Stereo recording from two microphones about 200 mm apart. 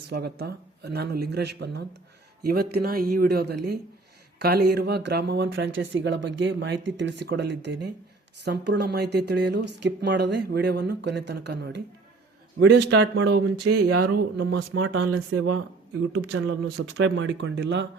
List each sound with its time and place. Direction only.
0.1 s speech: 55° right (ahead or behind)